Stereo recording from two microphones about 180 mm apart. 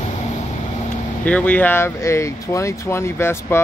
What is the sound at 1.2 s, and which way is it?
Speech, 10° left (ahead or behind).